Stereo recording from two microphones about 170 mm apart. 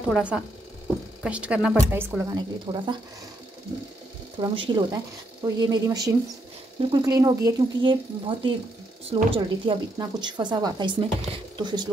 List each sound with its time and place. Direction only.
0.1 s a woman's voice: 5° right (ahead or behind)
2.3 s a woman's voice: 25° right (ahead or behind)
4.4 s a woman's voice: 25° right (ahead or behind)